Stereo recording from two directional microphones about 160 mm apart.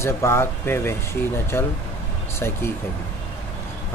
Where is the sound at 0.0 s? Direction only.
15° left (ahead or behind).